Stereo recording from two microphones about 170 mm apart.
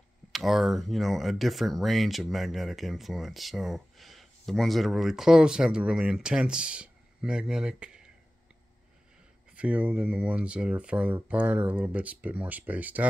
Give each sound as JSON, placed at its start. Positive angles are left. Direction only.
{"t": 0.3, "sound": "speech", "side_deg": 0}
{"t": 9.5, "sound": "speech", "side_deg": -5}